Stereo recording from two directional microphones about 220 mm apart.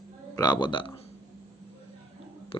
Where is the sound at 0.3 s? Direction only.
20° left (ahead or behind).